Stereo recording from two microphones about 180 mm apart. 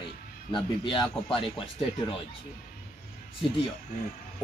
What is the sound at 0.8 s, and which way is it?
Speech, 25° left (ahead or behind).